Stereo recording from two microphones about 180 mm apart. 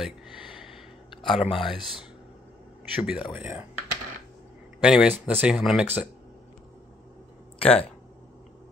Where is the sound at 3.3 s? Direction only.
10° right (ahead or behind).